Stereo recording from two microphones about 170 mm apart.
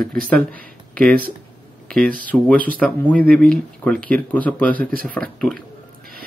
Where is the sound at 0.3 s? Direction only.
5° left (ahead or behind).